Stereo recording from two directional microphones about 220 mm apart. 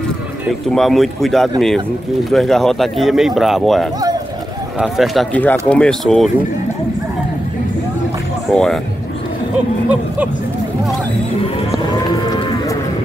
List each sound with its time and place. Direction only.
0.7 s speech: centre (ahead or behind)
8.5 s speech: 5° left (ahead or behind)
12.2 s run: 20° left (ahead or behind)